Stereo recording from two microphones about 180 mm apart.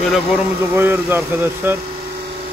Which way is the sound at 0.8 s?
10° right (ahead or behind).